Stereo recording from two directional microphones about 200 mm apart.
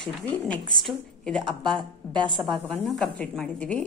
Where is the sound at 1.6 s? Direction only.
25° right (ahead or behind).